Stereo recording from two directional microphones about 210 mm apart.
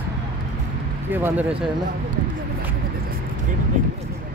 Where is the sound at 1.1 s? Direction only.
10° right (ahead or behind).